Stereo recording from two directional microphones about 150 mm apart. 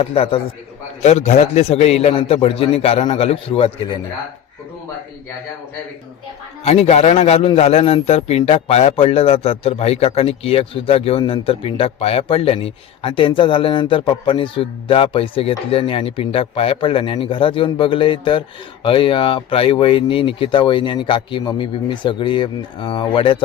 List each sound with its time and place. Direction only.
0.0 s a man's voice: 40° left (ahead or behind)
1.0 s a man's voice: 50° left (ahead or behind)
6.7 s a man's voice: 45° left (ahead or behind)